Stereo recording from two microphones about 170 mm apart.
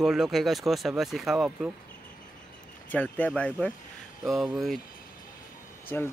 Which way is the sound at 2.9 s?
10° left (ahead or behind).